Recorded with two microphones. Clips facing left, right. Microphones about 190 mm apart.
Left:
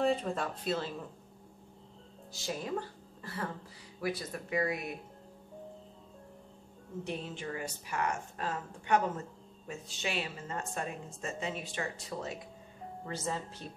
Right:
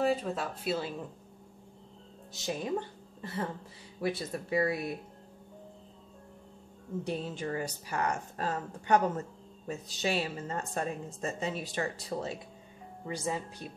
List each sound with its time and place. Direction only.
0.0 s speech: 5° right (ahead or behind)
2.3 s a woman's voice: 20° right (ahead or behind)
7.1 s a woman's voice: 35° right (ahead or behind)
13.0 s speech: 15° right (ahead or behind)